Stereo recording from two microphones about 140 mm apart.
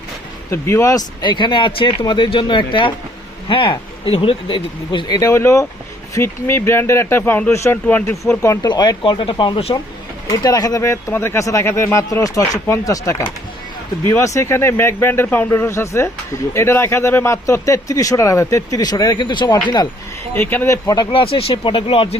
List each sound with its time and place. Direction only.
0.5 s speech: 20° left (ahead or behind)
8.6 s speech: 30° left (ahead or behind)
10.2 s speech: 25° left (ahead or behind)
20.3 s speech: 15° left (ahead or behind); by 22.2 s 45° left (ahead or behind)